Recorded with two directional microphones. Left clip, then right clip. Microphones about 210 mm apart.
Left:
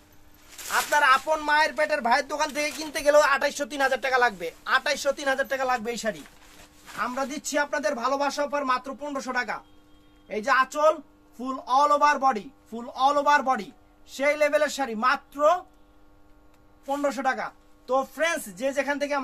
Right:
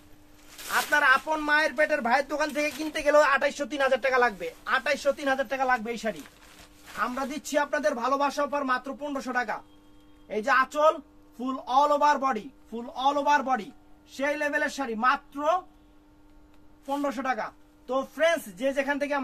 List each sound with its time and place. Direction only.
0.7 s speech: 25° left (ahead or behind); by 6.1 s 50° left (ahead or behind)
7.2 s a man's voice: 20° left (ahead or behind)
12.9 s speech: 40° left (ahead or behind)
14.1 s a man's voice: 55° left (ahead or behind)
16.8 s a man's voice: 45° left (ahead or behind); by 19.2 s 20° left (ahead or behind)